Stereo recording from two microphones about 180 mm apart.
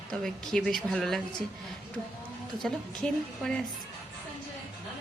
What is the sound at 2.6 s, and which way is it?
Speech, 5° left (ahead or behind).